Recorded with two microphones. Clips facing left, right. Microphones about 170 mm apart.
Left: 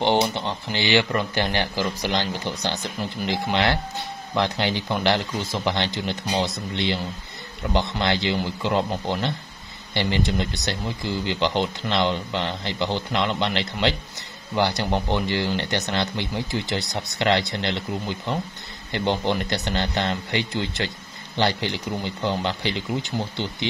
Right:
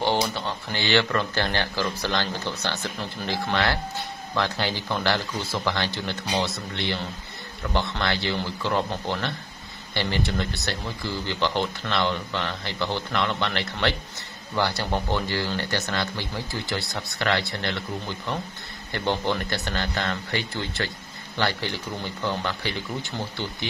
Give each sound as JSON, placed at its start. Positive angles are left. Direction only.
{"t": 0.0, "sound": "speech", "side_deg": 20}